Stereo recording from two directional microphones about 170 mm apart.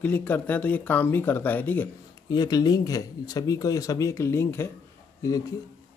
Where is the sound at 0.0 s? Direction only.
10° left (ahead or behind).